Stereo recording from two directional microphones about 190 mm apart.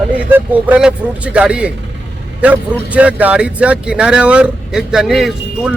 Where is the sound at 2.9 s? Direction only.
5° right (ahead or behind).